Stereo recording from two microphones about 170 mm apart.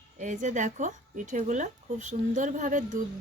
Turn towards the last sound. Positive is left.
turn(degrees=-50)  # may be behind; listen again after turning